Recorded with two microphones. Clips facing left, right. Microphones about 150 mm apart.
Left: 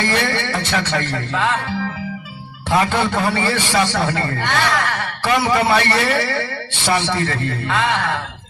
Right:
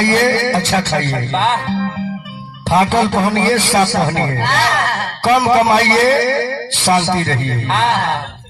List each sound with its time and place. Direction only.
0.0 s a man's voice: 35° right (ahead or behind)
1.3 s a man's voice: 25° right (ahead or behind)